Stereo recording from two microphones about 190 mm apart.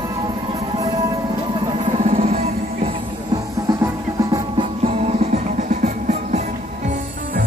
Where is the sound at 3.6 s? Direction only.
20° right (ahead or behind).